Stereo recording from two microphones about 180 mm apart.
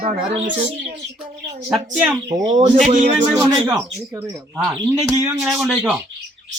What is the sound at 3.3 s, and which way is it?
Speech, 20° right (ahead or behind).